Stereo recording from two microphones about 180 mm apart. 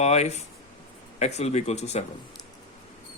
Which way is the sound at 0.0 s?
40° left (ahead or behind).